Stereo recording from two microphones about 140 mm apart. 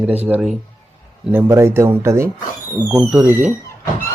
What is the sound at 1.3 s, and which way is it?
Speech, 20° right (ahead or behind).